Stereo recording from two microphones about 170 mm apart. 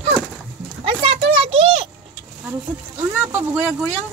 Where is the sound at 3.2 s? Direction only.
10° right (ahead or behind).